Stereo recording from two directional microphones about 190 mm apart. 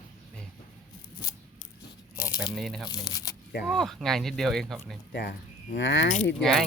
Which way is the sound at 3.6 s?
Centre (ahead or behind).